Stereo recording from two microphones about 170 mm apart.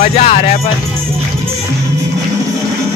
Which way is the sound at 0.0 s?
40° left (ahead or behind).